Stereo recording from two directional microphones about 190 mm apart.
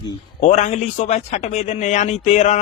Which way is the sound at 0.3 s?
40° left (ahead or behind).